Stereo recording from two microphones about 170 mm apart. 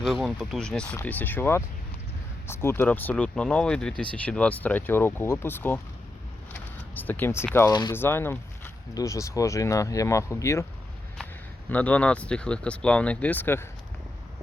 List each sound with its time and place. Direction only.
0.0 s speech: centre (ahead or behind)
6.5 s a sound: 10° left (ahead or behind)
7.7 s speech: 25° left (ahead or behind)
7.9 s speech: 15° left (ahead or behind)
11.7 s speech: 10° left (ahead or behind)